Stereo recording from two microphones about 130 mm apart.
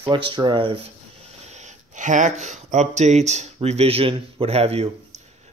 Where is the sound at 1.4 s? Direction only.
60° right (ahead or behind).